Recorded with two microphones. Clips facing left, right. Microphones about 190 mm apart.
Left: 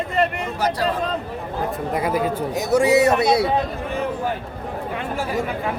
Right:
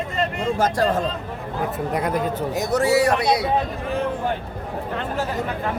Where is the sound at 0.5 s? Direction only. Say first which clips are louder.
Right 1 dB; 50° right (ahead or behind).